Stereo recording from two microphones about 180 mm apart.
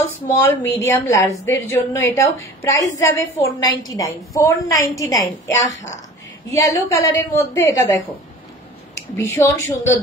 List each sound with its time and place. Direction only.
0.0 s a woman's voice: 15° left (ahead or behind)
6.5 s a woman's voice: 15° left (ahead or behind)
9.1 s a woman's voice: 15° left (ahead or behind)